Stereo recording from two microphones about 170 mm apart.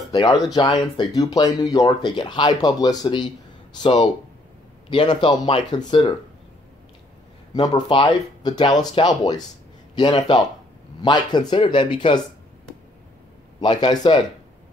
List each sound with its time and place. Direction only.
0.1 s speech: 25° left (ahead or behind)
7.5 s speech: 25° left (ahead or behind)
13.6 s speech: 25° left (ahead or behind)